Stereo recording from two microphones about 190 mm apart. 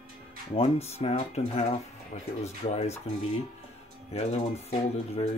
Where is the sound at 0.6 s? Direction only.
35° left (ahead or behind).